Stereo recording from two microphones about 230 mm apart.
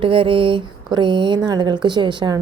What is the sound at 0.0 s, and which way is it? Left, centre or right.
Speech, right.